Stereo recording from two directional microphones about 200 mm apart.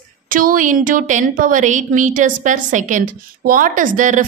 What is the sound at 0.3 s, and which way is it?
A woman's voice, 45° right (ahead or behind).